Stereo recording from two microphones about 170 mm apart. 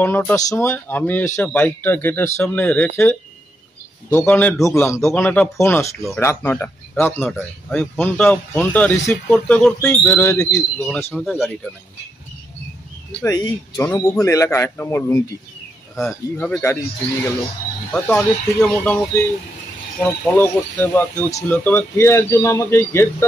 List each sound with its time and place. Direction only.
0.0 s speech: 10° left (ahead or behind)
11.1 s speech: centre (ahead or behind)
13.2 s speech: 20° left (ahead or behind)
17.9 s speech: 5° left (ahead or behind)